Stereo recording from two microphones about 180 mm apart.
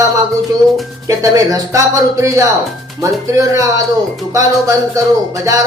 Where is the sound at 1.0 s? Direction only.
20° right (ahead or behind).